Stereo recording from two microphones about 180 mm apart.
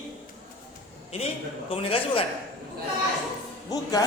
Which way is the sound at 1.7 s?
30° left (ahead or behind).